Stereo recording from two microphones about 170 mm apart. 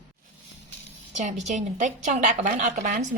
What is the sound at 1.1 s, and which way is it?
Speech, 45° right (ahead or behind).